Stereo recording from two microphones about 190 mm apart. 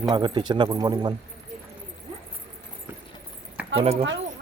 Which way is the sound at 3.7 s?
30° right (ahead or behind).